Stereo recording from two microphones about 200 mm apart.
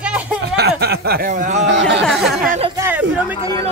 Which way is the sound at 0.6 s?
55° right (ahead or behind).